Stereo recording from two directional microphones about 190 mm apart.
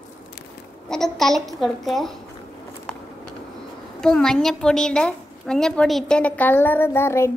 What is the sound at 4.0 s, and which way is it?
A woman's voice, 5° left (ahead or behind).